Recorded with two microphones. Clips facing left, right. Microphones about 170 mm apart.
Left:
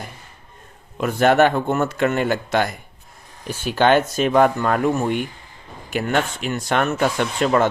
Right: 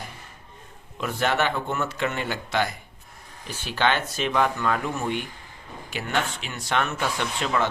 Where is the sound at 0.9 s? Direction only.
50° left (ahead or behind).